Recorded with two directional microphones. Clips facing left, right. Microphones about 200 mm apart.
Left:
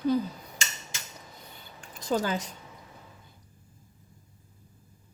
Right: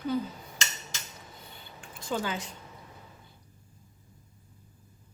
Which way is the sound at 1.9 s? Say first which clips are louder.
Left 4 dB; 40° left (ahead or behind).